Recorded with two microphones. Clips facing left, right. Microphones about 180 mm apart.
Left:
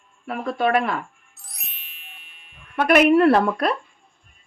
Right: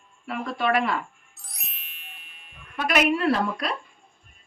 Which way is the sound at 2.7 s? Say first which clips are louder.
Left 8 dB; 60° left (ahead or behind).